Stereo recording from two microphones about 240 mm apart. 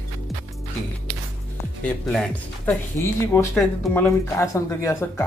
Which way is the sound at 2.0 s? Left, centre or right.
Centre.